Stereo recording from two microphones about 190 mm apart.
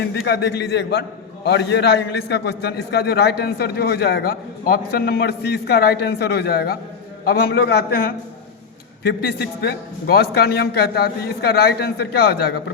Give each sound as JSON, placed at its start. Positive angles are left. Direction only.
{"t": 0.3, "sound": "a man's voice", "side_deg": 60}